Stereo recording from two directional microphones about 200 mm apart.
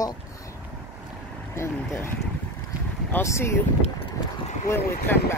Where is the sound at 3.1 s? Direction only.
15° left (ahead or behind).